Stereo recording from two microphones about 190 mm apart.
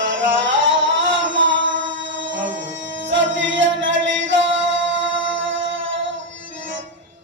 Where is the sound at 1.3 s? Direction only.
80° right.